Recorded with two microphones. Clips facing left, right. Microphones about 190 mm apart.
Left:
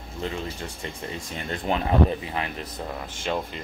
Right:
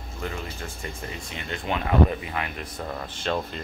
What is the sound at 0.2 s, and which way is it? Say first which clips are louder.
Speech: left 3 dB; 25° left (ahead or behind).